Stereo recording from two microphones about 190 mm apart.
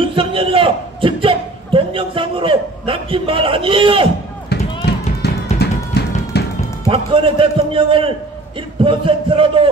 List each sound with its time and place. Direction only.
0.0 s a sound: 25° right (ahead or behind)
5.2 s music: 60° left (ahead or behind)
6.9 s a man's voice: 25° right (ahead or behind)